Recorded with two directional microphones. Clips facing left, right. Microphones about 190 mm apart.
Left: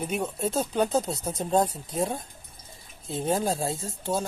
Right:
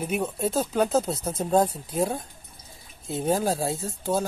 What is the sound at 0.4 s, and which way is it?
Speech, centre (ahead or behind).